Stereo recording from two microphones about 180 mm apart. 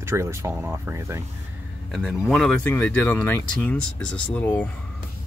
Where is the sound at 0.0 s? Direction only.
15° right (ahead or behind).